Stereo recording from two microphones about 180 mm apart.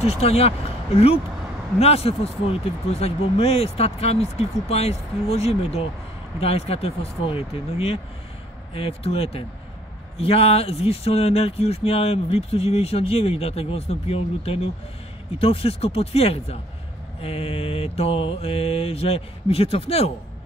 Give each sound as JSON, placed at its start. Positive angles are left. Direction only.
{"t": 0.0, "sound": "speech", "side_deg": 35}